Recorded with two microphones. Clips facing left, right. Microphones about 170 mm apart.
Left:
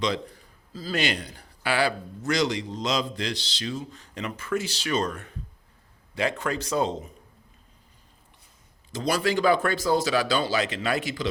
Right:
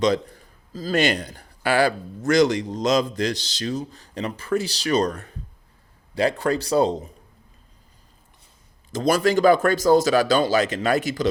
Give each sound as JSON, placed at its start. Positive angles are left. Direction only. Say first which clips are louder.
{"t": 0.7, "sound": "a man's voice", "louder": "right 6 dB", "side_deg": -45}
{"t": 8.9, "sound": "a man's voice", "louder": "right 6 dB", "side_deg": -45}